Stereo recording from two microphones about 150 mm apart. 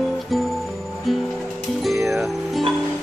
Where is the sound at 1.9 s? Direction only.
15° right (ahead or behind).